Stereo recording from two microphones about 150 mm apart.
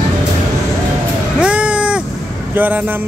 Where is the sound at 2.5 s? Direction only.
10° right (ahead or behind).